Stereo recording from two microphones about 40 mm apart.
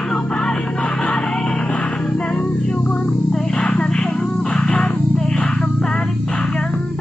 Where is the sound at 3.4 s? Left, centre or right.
Left.